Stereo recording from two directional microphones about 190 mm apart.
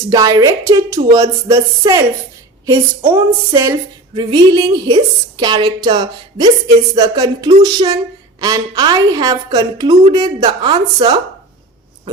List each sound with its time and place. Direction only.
0.1 s a woman's voice: 20° right (ahead or behind)